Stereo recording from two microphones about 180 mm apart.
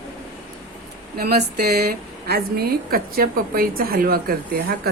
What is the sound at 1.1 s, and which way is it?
A woman's voice, 60° right (ahead or behind).